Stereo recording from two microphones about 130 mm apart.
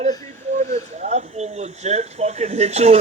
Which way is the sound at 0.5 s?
65° right (ahead or behind).